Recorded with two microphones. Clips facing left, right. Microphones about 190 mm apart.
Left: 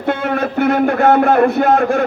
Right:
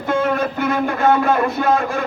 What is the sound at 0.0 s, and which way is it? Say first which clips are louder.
A man's voice: left 1 dB; 65° left (ahead or behind).